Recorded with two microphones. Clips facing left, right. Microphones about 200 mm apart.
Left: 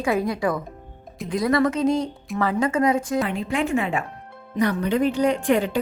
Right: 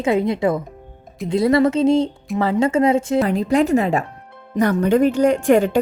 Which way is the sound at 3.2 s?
40° right (ahead or behind).